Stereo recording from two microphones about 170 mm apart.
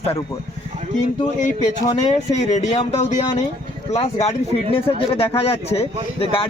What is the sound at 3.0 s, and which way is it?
Speech, 40° left (ahead or behind).